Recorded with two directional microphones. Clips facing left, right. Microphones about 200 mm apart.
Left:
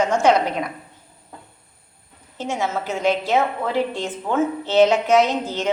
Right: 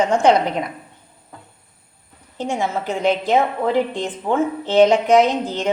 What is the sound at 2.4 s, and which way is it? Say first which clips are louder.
A woman's voice: right 2 dB; 15° right (ahead or behind).